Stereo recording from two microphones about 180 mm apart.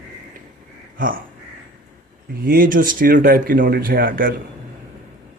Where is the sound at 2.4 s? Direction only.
50° right (ahead or behind).